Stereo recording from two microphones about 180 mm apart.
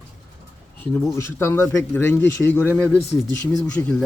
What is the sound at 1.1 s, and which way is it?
Speech, 15° left (ahead or behind).